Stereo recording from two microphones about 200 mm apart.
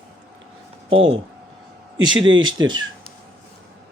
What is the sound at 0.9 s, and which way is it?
Speech, 75° right (ahead or behind).